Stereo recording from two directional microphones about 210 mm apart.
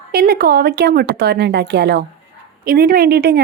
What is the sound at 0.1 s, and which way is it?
A woman's voice, 45° right (ahead or behind).